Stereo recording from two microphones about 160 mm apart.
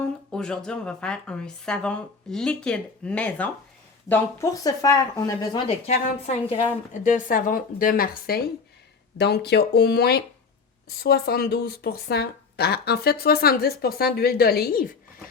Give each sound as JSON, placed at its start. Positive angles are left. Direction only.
{"t": 0.0, "sound": "a woman's voice", "side_deg": 5}
{"t": 4.1, "sound": "speech", "side_deg": 20}
{"t": 5.9, "sound": "a woman's voice", "side_deg": 45}
{"t": 9.1, "sound": "speech", "side_deg": 90}